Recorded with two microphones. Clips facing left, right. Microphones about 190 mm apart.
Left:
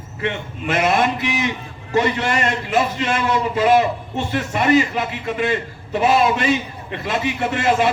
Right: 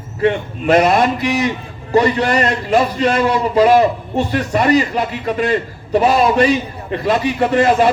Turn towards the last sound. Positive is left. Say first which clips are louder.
# right 6 dB
turn(degrees=-40)  # may be behind; listen again after turning